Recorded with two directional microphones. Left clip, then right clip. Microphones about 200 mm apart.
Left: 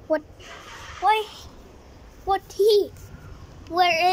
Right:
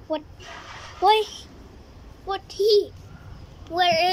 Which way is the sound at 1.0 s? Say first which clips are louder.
Right 2 dB; 25° right (ahead or behind).